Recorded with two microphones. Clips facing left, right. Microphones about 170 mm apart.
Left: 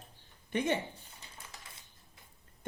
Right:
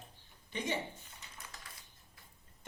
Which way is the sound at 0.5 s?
55° left (ahead or behind).